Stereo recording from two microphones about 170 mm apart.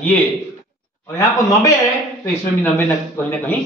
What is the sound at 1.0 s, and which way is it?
Speech, 20° left (ahead or behind).